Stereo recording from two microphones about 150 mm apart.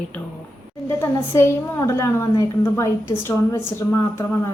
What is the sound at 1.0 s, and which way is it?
A woman's voice, 15° left (ahead or behind).